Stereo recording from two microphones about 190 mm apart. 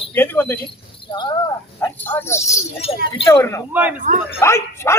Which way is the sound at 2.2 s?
15° left (ahead or behind).